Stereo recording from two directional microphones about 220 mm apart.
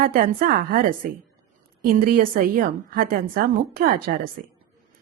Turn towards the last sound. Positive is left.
turn(degrees=-40)  # may be behind; listen again after turning